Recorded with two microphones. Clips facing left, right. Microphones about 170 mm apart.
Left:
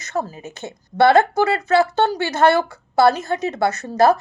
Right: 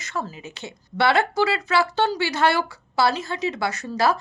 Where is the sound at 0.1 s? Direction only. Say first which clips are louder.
Left 5 dB; 45° left (ahead or behind).